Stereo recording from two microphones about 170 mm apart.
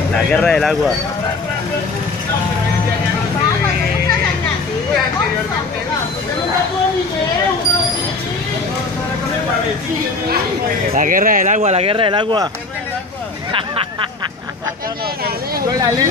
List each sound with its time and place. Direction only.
0.1 s speech: 5° left (ahead or behind)
11.0 s speech: 55° right (ahead or behind); by 12.4 s 30° right (ahead or behind)